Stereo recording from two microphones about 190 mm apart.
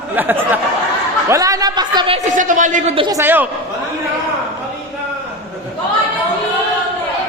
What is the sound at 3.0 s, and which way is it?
Speech, 15° right (ahead or behind).